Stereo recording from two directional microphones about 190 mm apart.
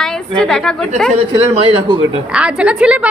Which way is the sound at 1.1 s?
30° right (ahead or behind).